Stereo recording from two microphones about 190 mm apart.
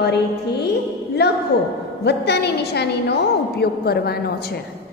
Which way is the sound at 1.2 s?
60° left (ahead or behind).